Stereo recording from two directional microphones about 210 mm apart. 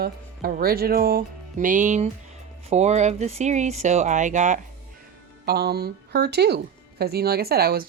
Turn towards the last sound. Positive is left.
turn(degrees=-45)  # may be behind; listen again after turning